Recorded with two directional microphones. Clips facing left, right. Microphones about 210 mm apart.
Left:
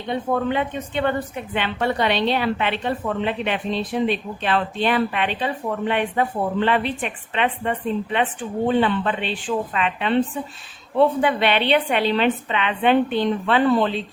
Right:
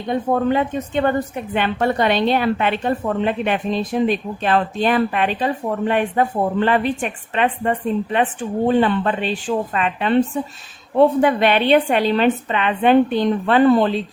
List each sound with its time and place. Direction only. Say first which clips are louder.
0.1 s a woman's voice: right 4 dB; 40° right (ahead or behind)